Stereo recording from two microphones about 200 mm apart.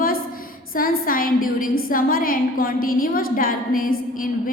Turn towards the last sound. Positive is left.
turn(degrees=45)  # may be behind; listen again after turning